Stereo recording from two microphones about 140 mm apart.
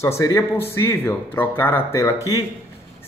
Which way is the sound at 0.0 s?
20° left (ahead or behind).